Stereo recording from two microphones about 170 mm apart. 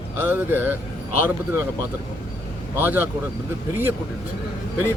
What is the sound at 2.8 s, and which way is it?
Speech, 10° right (ahead or behind).